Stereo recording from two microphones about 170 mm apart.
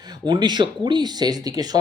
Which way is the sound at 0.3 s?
25° right (ahead or behind).